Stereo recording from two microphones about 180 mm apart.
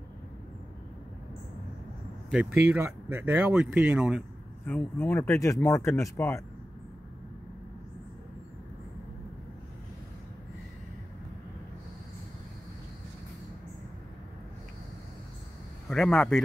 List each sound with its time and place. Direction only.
2.3 s speech: 5° right (ahead or behind)
4.6 s speech: 10° left (ahead or behind)
15.9 s a man's voice: 5° left (ahead or behind)